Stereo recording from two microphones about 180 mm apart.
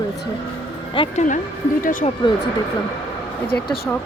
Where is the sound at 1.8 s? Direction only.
50° left (ahead or behind).